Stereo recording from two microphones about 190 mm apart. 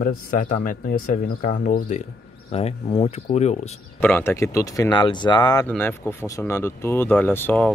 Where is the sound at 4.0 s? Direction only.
10° left (ahead or behind).